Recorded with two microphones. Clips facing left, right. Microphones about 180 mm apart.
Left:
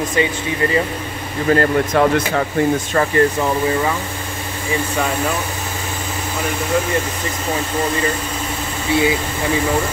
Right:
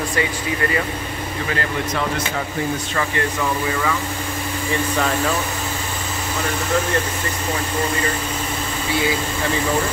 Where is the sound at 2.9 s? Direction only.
35° left (ahead or behind).